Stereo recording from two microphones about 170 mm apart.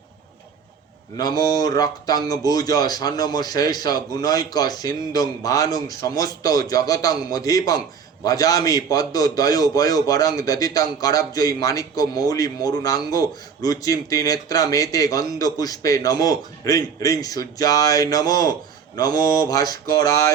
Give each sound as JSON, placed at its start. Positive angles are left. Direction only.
{"t": 1.1, "sound": "a man's voice", "side_deg": 25}